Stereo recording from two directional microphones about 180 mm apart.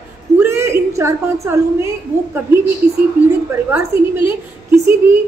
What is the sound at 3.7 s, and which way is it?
Speech, 10° right (ahead or behind).